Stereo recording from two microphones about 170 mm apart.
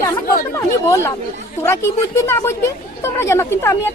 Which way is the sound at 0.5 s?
15° left (ahead or behind).